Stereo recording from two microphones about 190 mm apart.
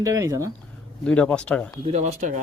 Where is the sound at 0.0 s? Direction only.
15° right (ahead or behind).